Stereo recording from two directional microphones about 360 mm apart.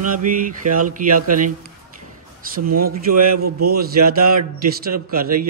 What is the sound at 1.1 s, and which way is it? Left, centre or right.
Speech, right.